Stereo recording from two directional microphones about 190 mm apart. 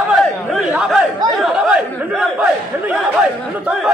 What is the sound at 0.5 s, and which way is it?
Speech, 5° right (ahead or behind).